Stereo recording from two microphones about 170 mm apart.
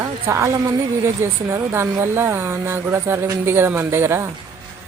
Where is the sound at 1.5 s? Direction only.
15° right (ahead or behind).